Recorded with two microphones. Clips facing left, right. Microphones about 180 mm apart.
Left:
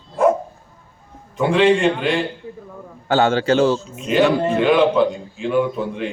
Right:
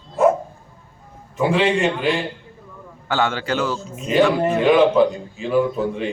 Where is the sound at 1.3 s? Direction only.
5° right (ahead or behind).